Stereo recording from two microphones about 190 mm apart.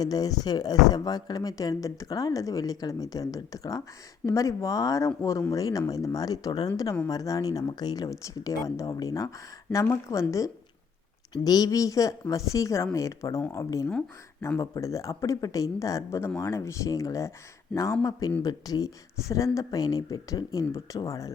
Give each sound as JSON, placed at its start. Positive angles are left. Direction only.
{"t": 0.0, "sound": "speech", "side_deg": 20}